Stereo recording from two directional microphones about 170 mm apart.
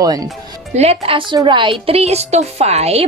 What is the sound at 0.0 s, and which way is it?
Speech, 20° right (ahead or behind).